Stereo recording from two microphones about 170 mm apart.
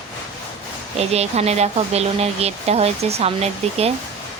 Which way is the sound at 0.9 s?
40° right (ahead or behind).